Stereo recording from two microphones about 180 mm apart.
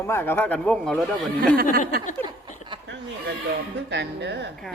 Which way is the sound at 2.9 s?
80° right.